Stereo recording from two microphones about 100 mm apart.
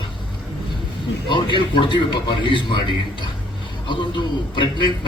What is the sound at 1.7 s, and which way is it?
A man's voice, 50° left (ahead or behind).